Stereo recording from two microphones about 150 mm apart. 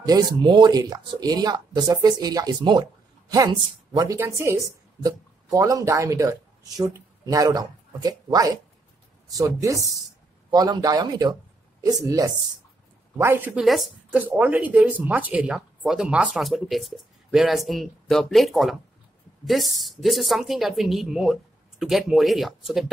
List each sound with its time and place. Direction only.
0.0 s speech: 25° right (ahead or behind)
13.7 s a woman's voice: centre (ahead or behind)